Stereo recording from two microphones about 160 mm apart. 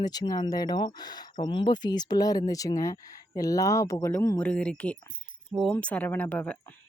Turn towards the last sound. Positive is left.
turn(degrees=10)  # may be behind; listen again after turning